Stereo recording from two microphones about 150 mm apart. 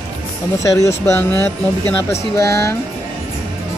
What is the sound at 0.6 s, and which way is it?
Speech, 20° left (ahead or behind).